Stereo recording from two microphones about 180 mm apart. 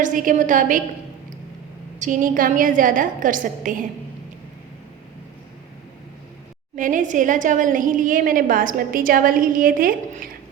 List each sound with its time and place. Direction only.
0.0 s a woman's voice: 45° right (ahead or behind)
2.0 s a woman's voice: 45° right (ahead or behind)
6.7 s a woman's voice: 45° right (ahead or behind)